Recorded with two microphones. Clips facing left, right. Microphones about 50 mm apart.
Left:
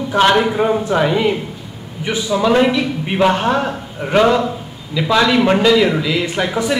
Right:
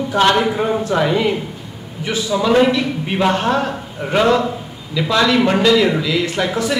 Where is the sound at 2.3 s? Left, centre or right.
Centre.